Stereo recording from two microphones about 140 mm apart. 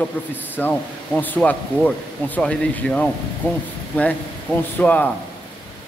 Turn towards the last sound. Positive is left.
turn(degrees=10)  # may be behind; listen again after turning